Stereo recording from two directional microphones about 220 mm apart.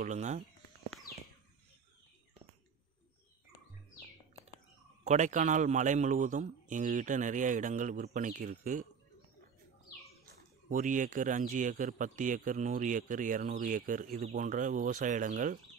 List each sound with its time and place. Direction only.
0.0 s speech: 30° right (ahead or behind)
5.0 s speech: 30° right (ahead or behind)
10.2 s speech: 35° right (ahead or behind)